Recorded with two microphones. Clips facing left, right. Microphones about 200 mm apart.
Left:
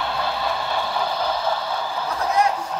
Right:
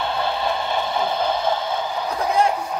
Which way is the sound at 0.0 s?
25° right (ahead or behind).